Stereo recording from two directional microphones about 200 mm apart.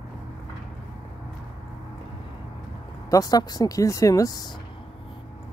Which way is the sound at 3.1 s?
20° left (ahead or behind).